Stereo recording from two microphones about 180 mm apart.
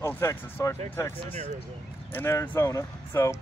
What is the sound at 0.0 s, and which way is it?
Speech, 15° left (ahead or behind).